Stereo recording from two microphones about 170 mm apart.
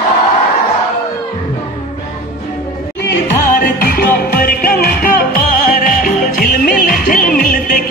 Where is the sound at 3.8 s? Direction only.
60° left (ahead or behind).